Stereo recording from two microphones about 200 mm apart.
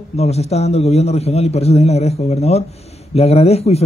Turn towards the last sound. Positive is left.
turn(degrees=30)  # may be behind; listen again after turning